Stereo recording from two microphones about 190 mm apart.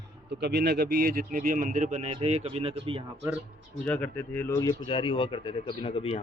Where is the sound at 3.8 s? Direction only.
5° left (ahead or behind).